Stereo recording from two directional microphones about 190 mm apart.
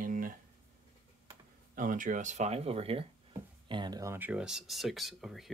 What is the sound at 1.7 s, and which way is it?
Speech, 45° right (ahead or behind).